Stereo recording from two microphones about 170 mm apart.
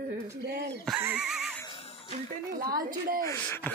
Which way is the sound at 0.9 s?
10° right (ahead or behind).